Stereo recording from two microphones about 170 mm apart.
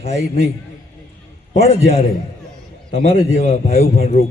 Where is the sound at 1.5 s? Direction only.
40° left (ahead or behind).